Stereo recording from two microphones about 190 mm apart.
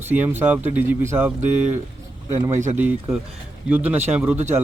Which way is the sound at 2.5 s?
40° right (ahead or behind).